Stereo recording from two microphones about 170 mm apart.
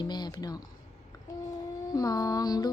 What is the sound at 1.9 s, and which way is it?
Speech, 20° left (ahead or behind).